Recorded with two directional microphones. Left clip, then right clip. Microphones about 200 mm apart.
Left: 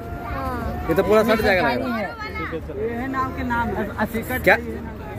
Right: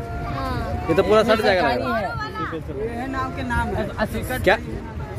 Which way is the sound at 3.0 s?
55° right (ahead or behind).